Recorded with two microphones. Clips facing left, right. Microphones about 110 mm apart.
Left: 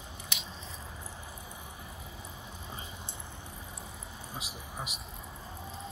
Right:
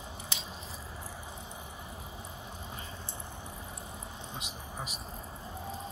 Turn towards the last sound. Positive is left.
turn(degrees=5)  # may be behind; listen again after turning